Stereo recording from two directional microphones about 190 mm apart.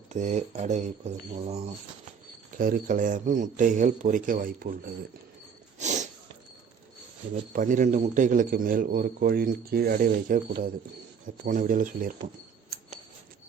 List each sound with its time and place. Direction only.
0.1 s speech: 40° right (ahead or behind)
2.6 s a man's voice: 50° right (ahead or behind)
5.8 s a sound: 40° right (ahead or behind)
7.5 s a man's voice: 45° right (ahead or behind)
11.4 s a man's voice: 45° right (ahead or behind)